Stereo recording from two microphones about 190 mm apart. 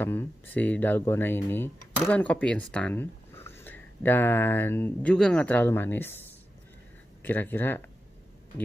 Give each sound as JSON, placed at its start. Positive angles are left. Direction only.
{"t": 0.0, "sound": "speech", "side_deg": 10}
{"t": 7.2, "sound": "speech", "side_deg": 10}